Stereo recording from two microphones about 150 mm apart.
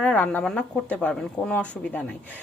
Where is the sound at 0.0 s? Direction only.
5° left (ahead or behind).